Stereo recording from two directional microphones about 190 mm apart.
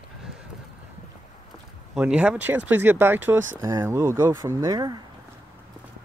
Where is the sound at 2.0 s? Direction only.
5° right (ahead or behind).